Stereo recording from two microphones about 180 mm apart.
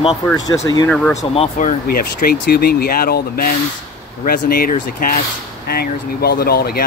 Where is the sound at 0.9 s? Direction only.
5° left (ahead or behind).